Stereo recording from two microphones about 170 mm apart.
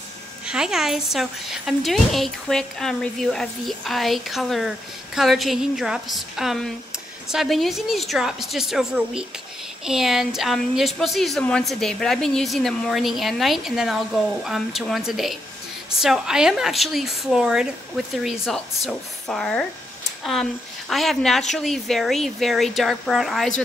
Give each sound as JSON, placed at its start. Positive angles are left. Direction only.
{"t": 0.5, "sound": "a woman's voice", "side_deg": -5}